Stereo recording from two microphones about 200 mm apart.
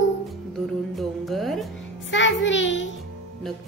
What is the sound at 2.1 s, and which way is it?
Speech, 65° left (ahead or behind).